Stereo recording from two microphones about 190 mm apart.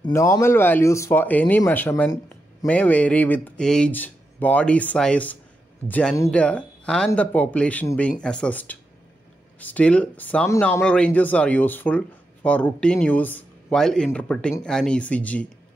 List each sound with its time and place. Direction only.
0.0 s speech: 15° left (ahead or behind)